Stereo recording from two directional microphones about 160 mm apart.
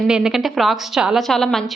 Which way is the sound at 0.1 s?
5° right (ahead or behind).